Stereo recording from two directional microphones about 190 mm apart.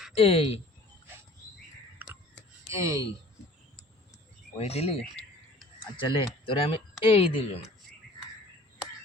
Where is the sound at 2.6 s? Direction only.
15° right (ahead or behind).